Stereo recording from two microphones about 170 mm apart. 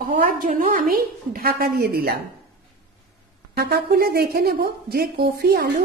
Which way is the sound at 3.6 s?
65° right (ahead or behind).